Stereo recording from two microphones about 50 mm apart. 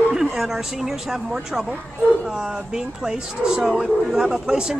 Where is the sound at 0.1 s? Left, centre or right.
Centre.